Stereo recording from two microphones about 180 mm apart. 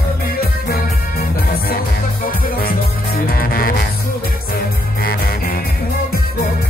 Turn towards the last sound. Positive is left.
turn(degrees=55)  # may be behind; listen again after turning